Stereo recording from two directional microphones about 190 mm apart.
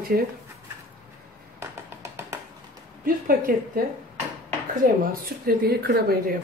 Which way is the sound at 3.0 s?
50° right (ahead or behind).